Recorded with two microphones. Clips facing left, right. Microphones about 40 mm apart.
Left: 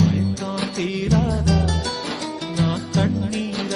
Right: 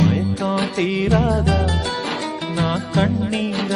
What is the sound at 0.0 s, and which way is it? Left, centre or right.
Music, right.